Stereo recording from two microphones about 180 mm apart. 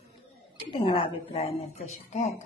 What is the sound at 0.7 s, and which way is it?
Speech, 30° left (ahead or behind).